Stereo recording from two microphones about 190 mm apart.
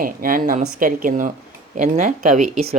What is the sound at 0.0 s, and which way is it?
Speech, 45° right (ahead or behind).